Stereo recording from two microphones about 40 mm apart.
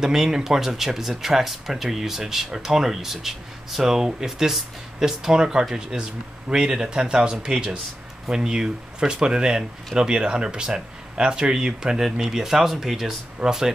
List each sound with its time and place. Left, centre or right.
0.0 s speech: centre